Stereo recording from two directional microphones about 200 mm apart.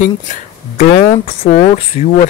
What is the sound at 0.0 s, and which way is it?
Speech, 35° left (ahead or behind).